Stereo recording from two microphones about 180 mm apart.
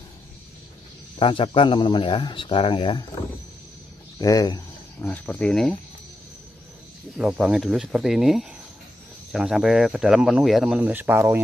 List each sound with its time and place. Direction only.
1.2 s a man's voice: 30° left (ahead or behind)
4.2 s a man's voice: 20° left (ahead or behind)
5.0 s speech: 5° left (ahead or behind)
7.2 s speech: centre (ahead or behind)